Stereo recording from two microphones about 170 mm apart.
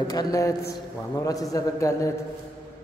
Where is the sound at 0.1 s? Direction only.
20° left (ahead or behind).